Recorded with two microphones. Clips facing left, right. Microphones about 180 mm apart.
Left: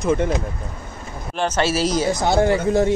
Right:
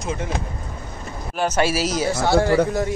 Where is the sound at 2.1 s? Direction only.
20° left (ahead or behind).